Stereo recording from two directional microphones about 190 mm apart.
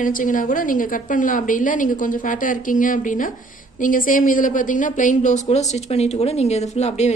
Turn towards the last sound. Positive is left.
turn(degrees=35)  # may be behind; listen again after turning